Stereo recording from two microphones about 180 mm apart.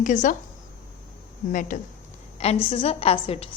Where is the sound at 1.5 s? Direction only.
45° left (ahead or behind).